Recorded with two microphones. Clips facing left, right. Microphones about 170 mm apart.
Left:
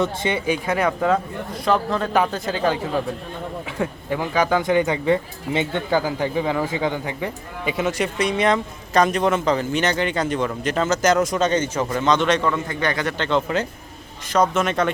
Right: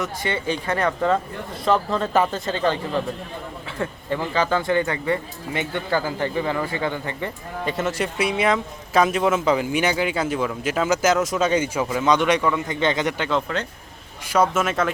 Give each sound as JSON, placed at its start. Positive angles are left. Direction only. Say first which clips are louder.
{"t": 0.0, "sound": "speech", "louder": "left 4 dB", "side_deg": 25}
{"t": 0.3, "sound": "a man's voice", "louder": "left 1 dB", "side_deg": 10}
{"t": 7.9, "sound": "a man's voice", "louder": "left 2 dB", "side_deg": 0}